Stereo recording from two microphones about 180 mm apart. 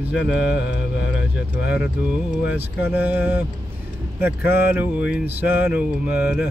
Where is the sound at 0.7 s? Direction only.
90° left.